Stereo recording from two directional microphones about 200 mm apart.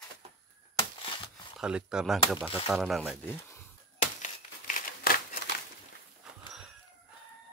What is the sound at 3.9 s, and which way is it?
Crumpling, 40° left (ahead or behind).